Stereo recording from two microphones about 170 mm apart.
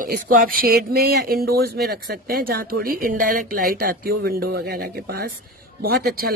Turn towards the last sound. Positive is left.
turn(degrees=-70)  # may be behind; listen again after turning